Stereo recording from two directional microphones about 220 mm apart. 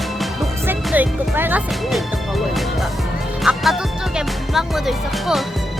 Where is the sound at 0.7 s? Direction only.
10° right (ahead or behind).